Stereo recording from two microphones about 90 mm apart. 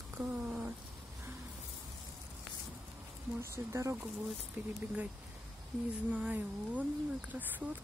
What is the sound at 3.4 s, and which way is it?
Speech, 30° right (ahead or behind).